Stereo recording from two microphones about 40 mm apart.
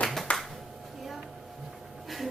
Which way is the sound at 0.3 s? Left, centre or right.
Left.